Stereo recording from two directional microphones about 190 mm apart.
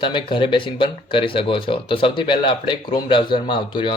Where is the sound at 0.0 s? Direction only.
25° left (ahead or behind).